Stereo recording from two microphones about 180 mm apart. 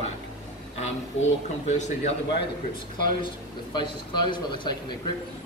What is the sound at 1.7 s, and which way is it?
Speech, 40° left (ahead or behind).